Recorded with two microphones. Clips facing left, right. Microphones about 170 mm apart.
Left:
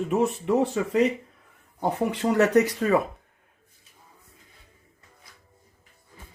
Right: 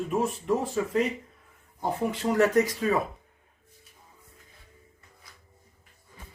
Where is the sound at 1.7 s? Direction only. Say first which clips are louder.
Left 3 dB; 70° left (ahead or behind).